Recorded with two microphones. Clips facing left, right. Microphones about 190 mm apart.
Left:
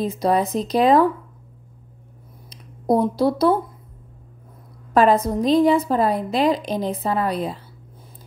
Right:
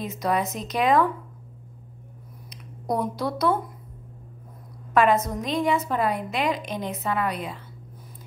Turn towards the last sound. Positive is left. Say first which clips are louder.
# left 5 dB
turn(degrees=35)  # may be behind; listen again after turning